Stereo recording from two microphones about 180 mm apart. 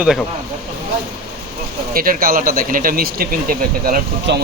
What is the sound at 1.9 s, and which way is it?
A man's voice, 55° right (ahead or behind).